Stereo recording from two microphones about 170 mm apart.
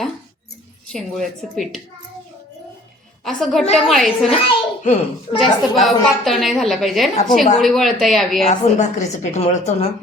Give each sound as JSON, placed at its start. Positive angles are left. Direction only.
{"t": 0.9, "sound": "a woman's voice", "side_deg": 0}
{"t": 3.2, "sound": "a woman's voice", "side_deg": 0}
{"t": 4.3, "sound": "a child's voice", "side_deg": 40}
{"t": 5.4, "sound": "a woman's voice", "side_deg": 0}
{"t": 8.4, "sound": "a woman's voice", "side_deg": 45}